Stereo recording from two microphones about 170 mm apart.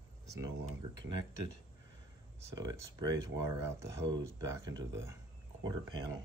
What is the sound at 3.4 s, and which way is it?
Speech, 15° right (ahead or behind).